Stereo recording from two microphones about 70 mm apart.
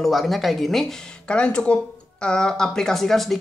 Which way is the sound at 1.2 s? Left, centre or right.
Centre.